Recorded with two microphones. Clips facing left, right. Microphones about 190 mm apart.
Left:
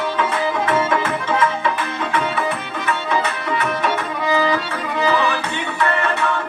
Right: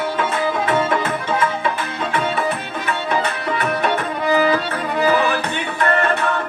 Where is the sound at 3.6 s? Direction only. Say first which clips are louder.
Right 2 dB; 40° right (ahead or behind).